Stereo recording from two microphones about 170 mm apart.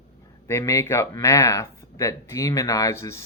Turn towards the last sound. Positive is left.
turn(degrees=15)  # may be behind; listen again after turning